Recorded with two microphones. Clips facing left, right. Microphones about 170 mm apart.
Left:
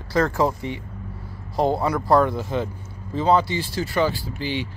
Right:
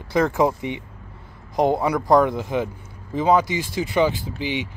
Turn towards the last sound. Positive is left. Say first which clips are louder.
# right 1 dB
turn(degrees=-15)  # may be behind; listen again after turning